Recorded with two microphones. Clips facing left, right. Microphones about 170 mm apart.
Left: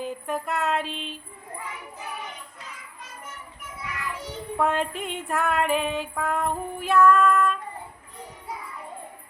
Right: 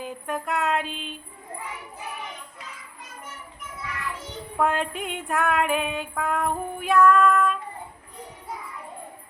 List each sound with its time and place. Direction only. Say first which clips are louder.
0.0 s music: left 1 dB; centre (ahead or behind)
4.5 s music: even; centre (ahead or behind)